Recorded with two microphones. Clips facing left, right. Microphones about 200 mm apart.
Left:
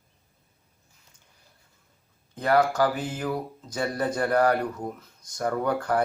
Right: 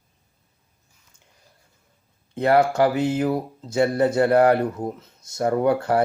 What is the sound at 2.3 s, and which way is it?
Speech, 25° right (ahead or behind).